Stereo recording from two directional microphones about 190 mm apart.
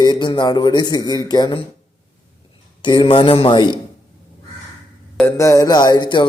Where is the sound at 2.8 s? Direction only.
25° left (ahead or behind).